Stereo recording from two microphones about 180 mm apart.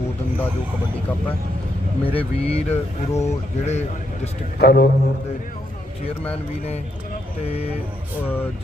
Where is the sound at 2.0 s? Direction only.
30° left (ahead or behind).